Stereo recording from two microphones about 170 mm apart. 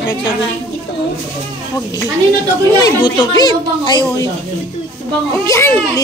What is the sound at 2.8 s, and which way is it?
Speech, 25° left (ahead or behind).